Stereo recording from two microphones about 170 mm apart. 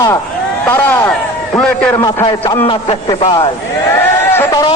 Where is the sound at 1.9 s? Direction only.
20° left (ahead or behind).